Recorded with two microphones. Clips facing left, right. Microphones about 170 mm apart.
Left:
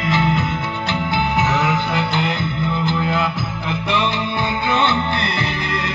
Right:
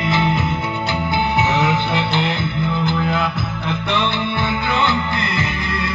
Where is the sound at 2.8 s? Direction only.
Centre (ahead or behind).